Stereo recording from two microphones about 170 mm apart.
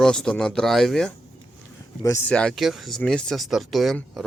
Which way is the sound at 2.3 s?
5° left (ahead or behind).